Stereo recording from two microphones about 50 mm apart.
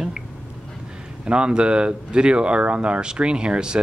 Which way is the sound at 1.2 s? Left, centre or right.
Right.